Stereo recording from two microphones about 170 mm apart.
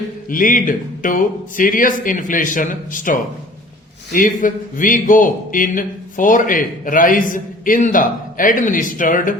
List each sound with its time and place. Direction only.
0.3 s a man's voice: 55° left (ahead or behind)